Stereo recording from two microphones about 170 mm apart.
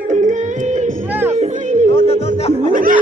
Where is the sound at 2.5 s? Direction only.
45° right (ahead or behind).